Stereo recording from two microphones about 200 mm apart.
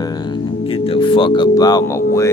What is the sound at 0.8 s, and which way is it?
Speech, 25° left (ahead or behind).